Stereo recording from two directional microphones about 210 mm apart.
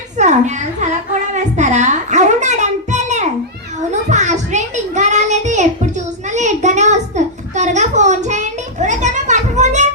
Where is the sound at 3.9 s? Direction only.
35° right (ahead or behind).